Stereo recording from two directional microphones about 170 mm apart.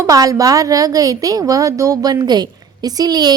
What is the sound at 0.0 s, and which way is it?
A woman's voice, 20° right (ahead or behind).